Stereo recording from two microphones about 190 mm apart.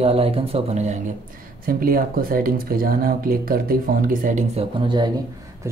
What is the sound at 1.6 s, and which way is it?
Speech, 50° right (ahead or behind).